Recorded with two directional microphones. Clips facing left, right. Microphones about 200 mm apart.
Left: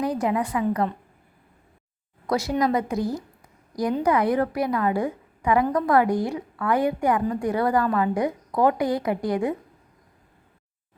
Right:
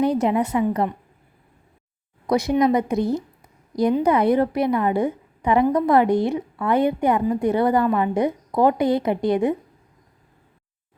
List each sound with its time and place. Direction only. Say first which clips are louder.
0.0 s a woman's voice: right 5 dB; 25° right (ahead or behind)
2.2 s a woman's voice: right 4 dB; 15° right (ahead or behind)